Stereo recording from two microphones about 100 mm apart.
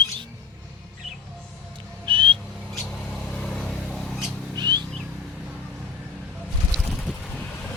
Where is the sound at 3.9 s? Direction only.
5° left (ahead or behind).